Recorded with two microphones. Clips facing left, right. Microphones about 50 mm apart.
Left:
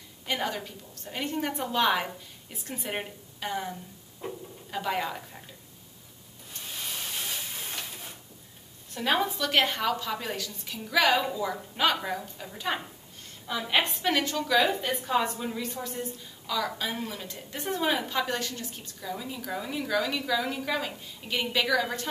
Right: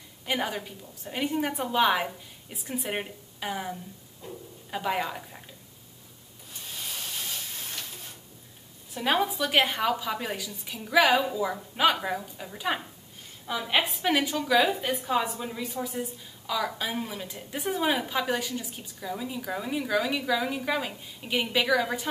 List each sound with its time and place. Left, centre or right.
0.3 s a woman's voice: centre
4.2 s speech: left
4.6 s a woman's voice: centre
6.7 s a sound: centre
7.0 s steam: centre
8.9 s a woman's voice: centre